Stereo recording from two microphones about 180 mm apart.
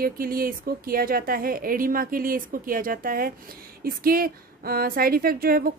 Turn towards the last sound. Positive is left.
turn(degrees=-55)  # may be behind; listen again after turning